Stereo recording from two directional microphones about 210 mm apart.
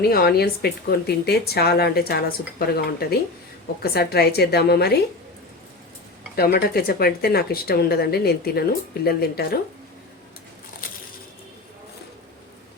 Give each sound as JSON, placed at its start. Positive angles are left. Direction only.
{"t": 0.0, "sound": "speech", "side_deg": 45}
{"t": 6.3, "sound": "speech", "side_deg": 45}